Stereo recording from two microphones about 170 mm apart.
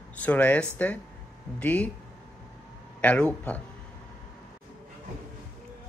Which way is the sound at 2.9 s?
10° left (ahead or behind).